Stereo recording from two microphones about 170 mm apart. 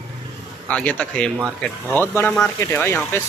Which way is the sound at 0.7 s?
5° left (ahead or behind).